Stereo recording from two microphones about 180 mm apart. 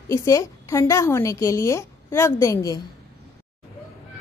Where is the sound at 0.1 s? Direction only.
15° left (ahead or behind).